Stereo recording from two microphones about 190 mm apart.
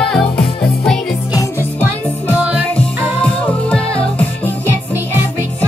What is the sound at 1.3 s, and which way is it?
Music, 15° left (ahead or behind).